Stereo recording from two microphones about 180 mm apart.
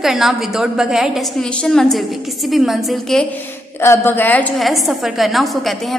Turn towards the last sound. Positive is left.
turn(degrees=0)  # may be behind; listen again after turning